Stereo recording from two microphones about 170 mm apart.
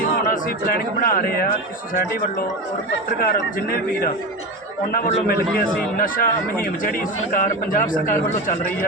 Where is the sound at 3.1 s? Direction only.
60° left (ahead or behind).